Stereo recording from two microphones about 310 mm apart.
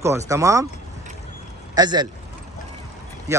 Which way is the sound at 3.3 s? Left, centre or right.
Centre.